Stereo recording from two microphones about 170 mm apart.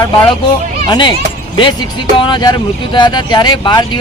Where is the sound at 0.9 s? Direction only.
30° left (ahead or behind).